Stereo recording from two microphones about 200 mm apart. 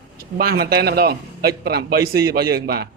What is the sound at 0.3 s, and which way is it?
Speech, 50° right (ahead or behind).